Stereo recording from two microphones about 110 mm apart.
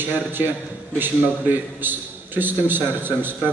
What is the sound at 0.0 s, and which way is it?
A man's voice, 20° right (ahead or behind).